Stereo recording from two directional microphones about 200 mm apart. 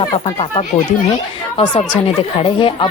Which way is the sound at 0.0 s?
25° left (ahead or behind).